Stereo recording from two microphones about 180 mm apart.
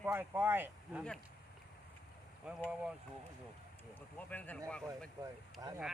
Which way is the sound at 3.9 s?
10° left (ahead or behind).